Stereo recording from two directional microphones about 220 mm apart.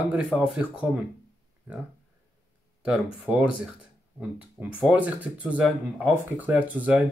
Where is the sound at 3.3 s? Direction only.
5° right (ahead or behind).